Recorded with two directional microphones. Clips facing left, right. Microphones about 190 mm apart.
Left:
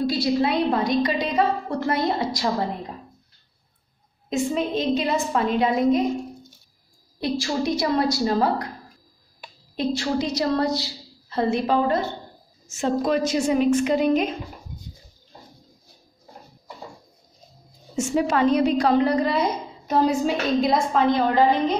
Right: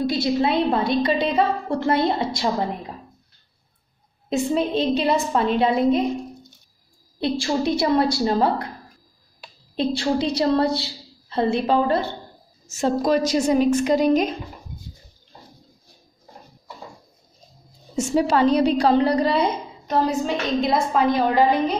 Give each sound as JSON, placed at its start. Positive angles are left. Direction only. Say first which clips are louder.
{"t": 0.0, "sound": "a woman's voice", "louder": "right 1 dB", "side_deg": -25}
{"t": 4.3, "sound": "a woman's voice", "louder": "right 2 dB", "side_deg": -30}
{"t": 7.2, "sound": "a woman's voice", "louder": "right 2 dB", "side_deg": -25}
{"t": 9.8, "sound": "a woman's voice", "louder": "right 2 dB", "side_deg": -30}
{"t": 17.9, "sound": "a woman's voice", "louder": "right 2 dB", "side_deg": -35}
{"t": 19.9, "sound": "a woman's voice", "louder": "left 1 dB", "side_deg": 10}
{"t": 20.7, "sound": "a woman's voice", "louder": "even", "side_deg": -10}